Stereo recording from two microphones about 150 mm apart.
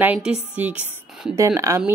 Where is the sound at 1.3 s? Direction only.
20° right (ahead or behind).